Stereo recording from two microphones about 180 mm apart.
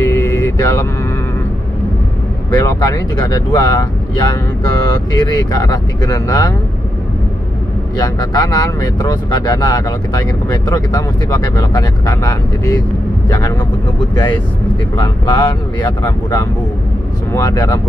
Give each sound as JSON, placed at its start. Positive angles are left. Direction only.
{"t": 0.0, "sound": "vehicle", "side_deg": 15}
{"t": 2.5, "sound": "speech", "side_deg": 20}
{"t": 5.3, "sound": "speech", "side_deg": 20}
{"t": 8.0, "sound": "speech", "side_deg": 25}
{"t": 15.0, "sound": "speech", "side_deg": 25}